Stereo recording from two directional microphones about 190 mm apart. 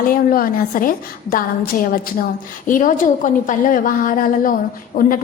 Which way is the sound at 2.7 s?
45° left (ahead or behind).